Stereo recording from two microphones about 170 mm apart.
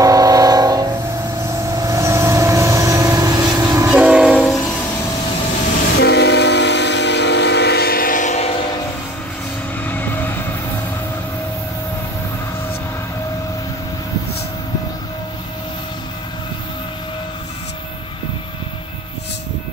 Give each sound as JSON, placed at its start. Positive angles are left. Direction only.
{"t": 0.0, "sound": "train", "side_deg": -20}
{"t": 1.4, "sound": "vehicle", "side_deg": -20}
{"t": 3.9, "sound": "train", "side_deg": -5}
{"t": 5.9, "sound": "train", "side_deg": 80}
{"t": 9.8, "sound": "vehicle", "side_deg": 10}